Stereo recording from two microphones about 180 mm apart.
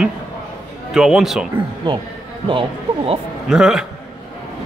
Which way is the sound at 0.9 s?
5° right (ahead or behind).